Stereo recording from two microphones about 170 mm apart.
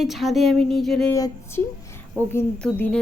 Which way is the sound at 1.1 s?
15° left (ahead or behind).